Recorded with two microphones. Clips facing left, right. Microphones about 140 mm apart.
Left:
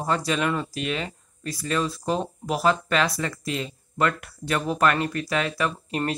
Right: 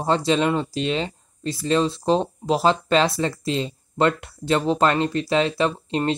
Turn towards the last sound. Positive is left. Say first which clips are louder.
# right 4 dB
turn(degrees=-25)  # may be behind; listen again after turning